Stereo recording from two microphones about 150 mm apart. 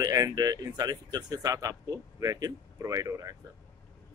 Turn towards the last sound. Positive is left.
turn(degrees=-20)  # may be behind; listen again after turning